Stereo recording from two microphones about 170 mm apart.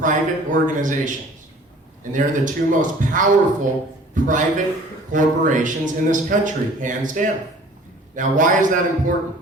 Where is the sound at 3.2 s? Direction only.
50° right (ahead or behind).